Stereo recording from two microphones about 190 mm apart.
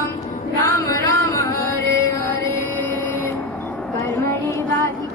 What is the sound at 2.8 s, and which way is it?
Music, 15° left (ahead or behind).